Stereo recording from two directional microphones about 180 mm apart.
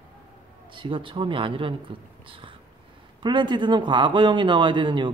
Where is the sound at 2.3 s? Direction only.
30° right (ahead or behind).